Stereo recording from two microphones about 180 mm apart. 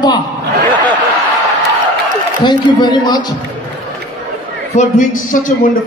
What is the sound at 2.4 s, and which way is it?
Speech, 25° left (ahead or behind).